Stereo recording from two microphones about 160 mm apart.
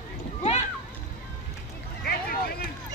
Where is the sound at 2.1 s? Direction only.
70° left (ahead or behind).